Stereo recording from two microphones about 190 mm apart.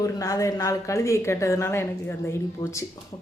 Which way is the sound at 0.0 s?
15° left (ahead or behind).